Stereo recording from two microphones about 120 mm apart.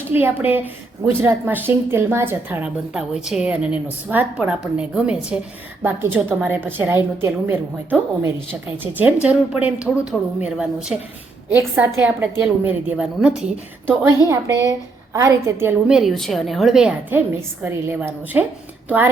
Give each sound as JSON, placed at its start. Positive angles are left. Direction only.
{"t": 0.1, "sound": "a woman's voice", "side_deg": -15}
{"t": 13.8, "sound": "a woman's voice", "side_deg": -25}
{"t": 15.9, "sound": "a woman's voice", "side_deg": 0}
{"t": 17.1, "sound": "a woman's voice", "side_deg": -15}